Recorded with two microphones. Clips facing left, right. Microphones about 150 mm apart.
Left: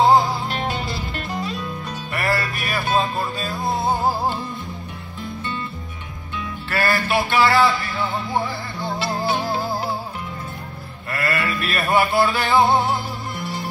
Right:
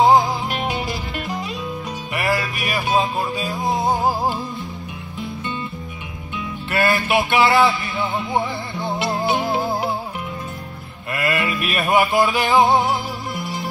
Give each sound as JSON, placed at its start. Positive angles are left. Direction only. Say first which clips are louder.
{"t": 0.0, "sound": "music", "louder": "right 1 dB", "side_deg": -20}
{"t": 6.7, "sound": "music", "louder": "right 2 dB", "side_deg": -20}
{"t": 11.1, "sound": "music", "louder": "right 2 dB", "side_deg": -15}